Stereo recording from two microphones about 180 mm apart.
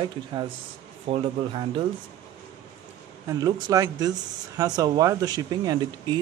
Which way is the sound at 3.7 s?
20° right (ahead or behind).